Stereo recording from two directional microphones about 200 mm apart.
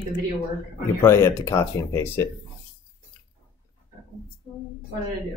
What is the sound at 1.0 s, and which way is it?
Speech, 15° left (ahead or behind).